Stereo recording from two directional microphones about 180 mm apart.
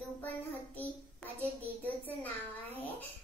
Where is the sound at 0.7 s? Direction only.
10° left (ahead or behind).